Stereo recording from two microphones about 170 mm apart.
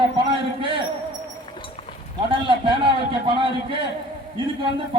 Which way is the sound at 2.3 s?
30° right (ahead or behind).